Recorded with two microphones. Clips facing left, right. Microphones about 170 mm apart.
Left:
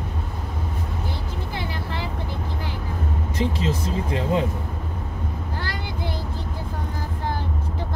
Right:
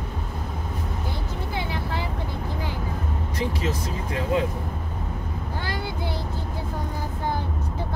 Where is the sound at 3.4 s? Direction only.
25° left (ahead or behind).